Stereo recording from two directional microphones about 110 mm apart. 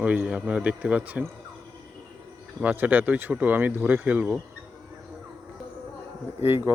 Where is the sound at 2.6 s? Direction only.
15° right (ahead or behind).